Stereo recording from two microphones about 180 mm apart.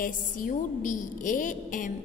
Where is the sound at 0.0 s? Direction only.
45° left (ahead or behind).